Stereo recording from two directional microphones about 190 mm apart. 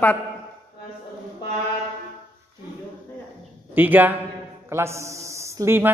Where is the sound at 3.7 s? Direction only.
10° right (ahead or behind).